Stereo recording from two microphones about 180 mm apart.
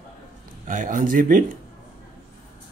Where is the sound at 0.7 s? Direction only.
45° right (ahead or behind).